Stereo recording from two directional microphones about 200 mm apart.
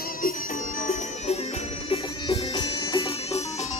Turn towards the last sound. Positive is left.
turn(degrees=35)  # may be behind; listen again after turning